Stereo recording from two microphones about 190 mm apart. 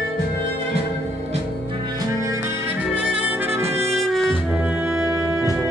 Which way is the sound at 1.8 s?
20° right (ahead or behind).